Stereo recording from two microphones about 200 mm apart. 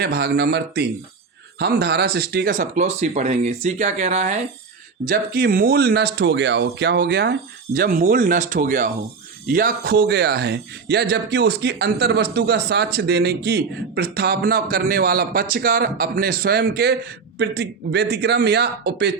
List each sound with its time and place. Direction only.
0.0 s speech: 50° right (ahead or behind); by 4.4 s 35° right (ahead or behind)
5.0 s speech: 45° right (ahead or behind)